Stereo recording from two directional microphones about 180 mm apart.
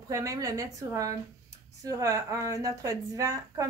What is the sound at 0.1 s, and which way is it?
A woman's voice, 20° right (ahead or behind).